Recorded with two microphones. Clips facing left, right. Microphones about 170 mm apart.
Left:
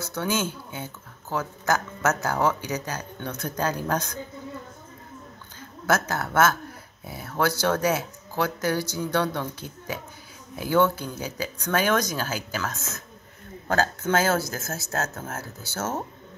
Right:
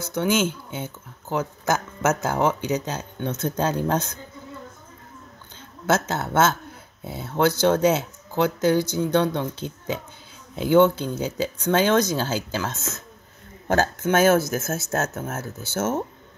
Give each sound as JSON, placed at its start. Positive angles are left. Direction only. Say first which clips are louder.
{"t": 0.0, "sound": "speech", "louder": "right 5 dB", "side_deg": -20}
{"t": 5.9, "sound": "speech", "louder": "right 2 dB", "side_deg": -20}